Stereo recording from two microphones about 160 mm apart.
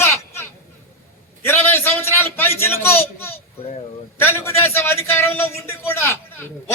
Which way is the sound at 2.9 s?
15° left (ahead or behind).